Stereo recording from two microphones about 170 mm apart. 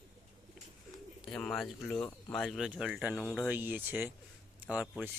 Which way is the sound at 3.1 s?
15° left (ahead or behind).